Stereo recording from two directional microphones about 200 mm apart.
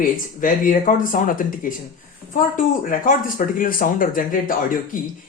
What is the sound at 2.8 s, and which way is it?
A woman's voice, 45° left (ahead or behind).